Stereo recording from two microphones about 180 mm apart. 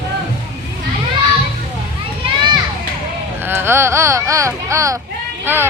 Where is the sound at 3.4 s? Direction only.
10° right (ahead or behind).